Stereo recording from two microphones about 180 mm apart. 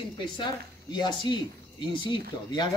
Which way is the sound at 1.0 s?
25° left (ahead or behind).